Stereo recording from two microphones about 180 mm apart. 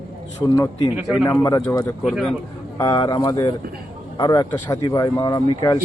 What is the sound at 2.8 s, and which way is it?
Speech, 20° left (ahead or behind).